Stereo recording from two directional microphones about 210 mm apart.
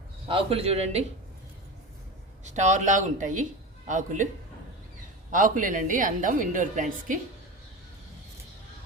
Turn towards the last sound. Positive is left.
turn(degrees=-40)  # may be behind; listen again after turning